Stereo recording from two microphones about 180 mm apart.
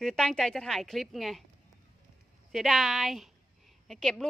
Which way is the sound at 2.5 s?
Centre (ahead or behind).